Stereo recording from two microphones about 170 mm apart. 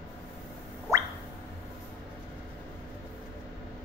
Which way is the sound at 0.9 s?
15° right (ahead or behind).